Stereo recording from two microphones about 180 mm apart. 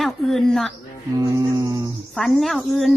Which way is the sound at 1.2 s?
20° right (ahead or behind).